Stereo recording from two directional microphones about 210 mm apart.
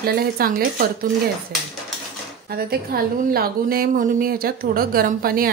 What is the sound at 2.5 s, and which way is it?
A woman's voice, 45° right (ahead or behind).